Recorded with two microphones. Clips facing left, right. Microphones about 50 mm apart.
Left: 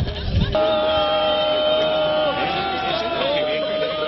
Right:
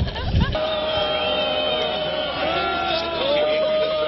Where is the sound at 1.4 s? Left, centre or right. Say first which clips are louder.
Left 3 dB; centre.